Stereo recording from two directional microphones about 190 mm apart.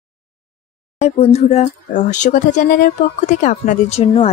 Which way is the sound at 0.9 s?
35° left (ahead or behind).